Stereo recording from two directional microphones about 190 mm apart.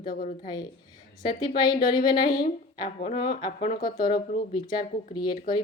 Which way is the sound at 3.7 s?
45° left (ahead or behind).